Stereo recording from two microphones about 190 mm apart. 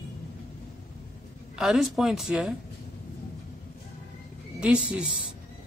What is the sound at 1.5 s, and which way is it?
Speech, 5° right (ahead or behind).